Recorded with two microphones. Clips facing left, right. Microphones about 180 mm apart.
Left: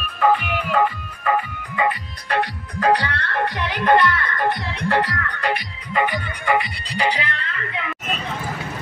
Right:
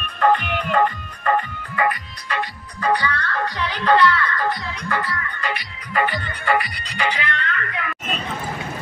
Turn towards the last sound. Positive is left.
turn(degrees=25)  # may be behind; listen again after turning